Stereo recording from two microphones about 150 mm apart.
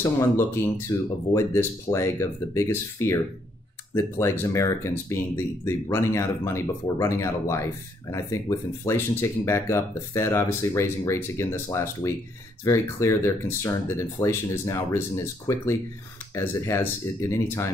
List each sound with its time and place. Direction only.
0.8 s speech: 20° left (ahead or behind)